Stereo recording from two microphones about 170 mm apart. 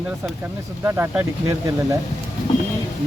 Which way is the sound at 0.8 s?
15° right (ahead or behind).